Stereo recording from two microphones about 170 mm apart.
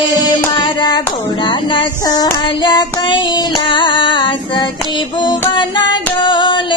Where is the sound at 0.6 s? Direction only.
25° left (ahead or behind).